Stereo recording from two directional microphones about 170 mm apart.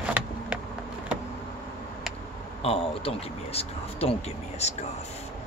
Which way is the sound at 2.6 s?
35° left (ahead or behind).